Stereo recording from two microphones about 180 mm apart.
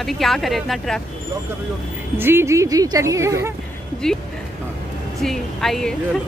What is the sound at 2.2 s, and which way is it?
Speech, 15° right (ahead or behind).